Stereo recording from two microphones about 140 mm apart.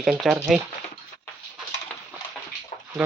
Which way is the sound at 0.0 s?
5° right (ahead or behind).